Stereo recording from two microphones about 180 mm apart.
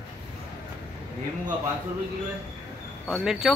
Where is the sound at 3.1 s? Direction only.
Centre (ahead or behind).